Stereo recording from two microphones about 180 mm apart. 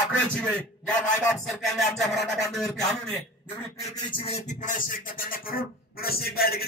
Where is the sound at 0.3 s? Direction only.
5° left (ahead or behind).